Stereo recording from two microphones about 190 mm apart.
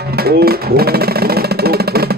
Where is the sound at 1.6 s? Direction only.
55° right (ahead or behind).